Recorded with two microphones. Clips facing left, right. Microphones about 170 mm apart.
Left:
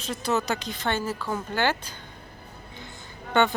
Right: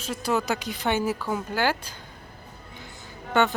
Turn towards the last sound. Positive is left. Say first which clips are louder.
# even
turn(degrees=-5)  # may be behind; listen again after turning